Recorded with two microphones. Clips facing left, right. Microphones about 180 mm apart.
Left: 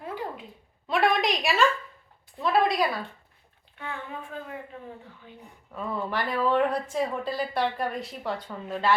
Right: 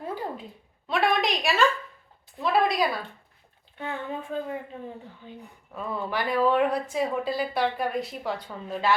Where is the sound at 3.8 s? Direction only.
30° right (ahead or behind).